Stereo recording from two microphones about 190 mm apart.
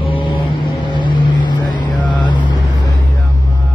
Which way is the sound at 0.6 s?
25° left (ahead or behind).